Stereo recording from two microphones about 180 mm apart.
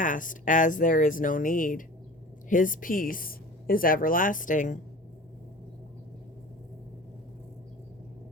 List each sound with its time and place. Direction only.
0.0 s speech: 45° left (ahead or behind)